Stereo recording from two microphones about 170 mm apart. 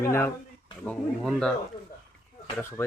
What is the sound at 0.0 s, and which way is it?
Speech, 15° left (ahead or behind).